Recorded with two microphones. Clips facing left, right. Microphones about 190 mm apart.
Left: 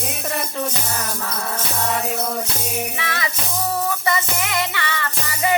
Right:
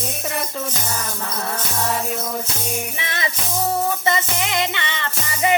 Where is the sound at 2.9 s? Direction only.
20° right (ahead or behind).